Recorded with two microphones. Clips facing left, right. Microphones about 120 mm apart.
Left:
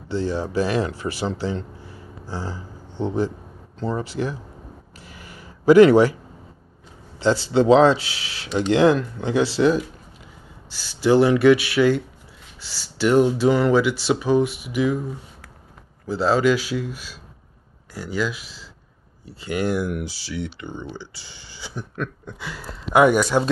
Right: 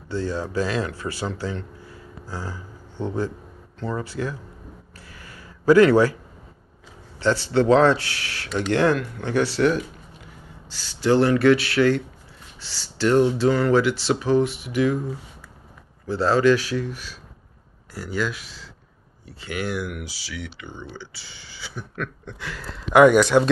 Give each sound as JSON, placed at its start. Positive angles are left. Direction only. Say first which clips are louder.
{"t": 0.1, "sound": "speech", "louder": "left 2 dB", "side_deg": 25}
{"t": 5.0, "sound": "a sound", "louder": "left 3 dB", "side_deg": 20}
{"t": 7.2, "sound": "speech", "louder": "left 2 dB", "side_deg": 20}
{"t": 16.1, "sound": "speech", "louder": "right 1 dB", "side_deg": 10}
{"t": 17.9, "sound": "speech", "louder": "left 1 dB", "side_deg": -5}
{"t": 19.8, "sound": "speech", "louder": "left 5 dB", "side_deg": 40}
{"t": 20.6, "sound": "speech", "louder": "left 4 dB", "side_deg": 15}